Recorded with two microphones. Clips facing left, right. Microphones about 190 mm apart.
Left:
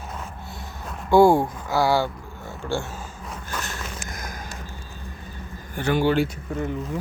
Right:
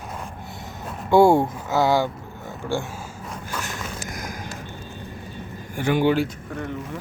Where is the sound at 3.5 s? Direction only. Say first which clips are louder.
Right 1 dB; 10° right (ahead or behind).